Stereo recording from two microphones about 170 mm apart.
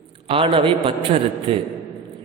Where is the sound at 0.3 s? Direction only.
30° right (ahead or behind).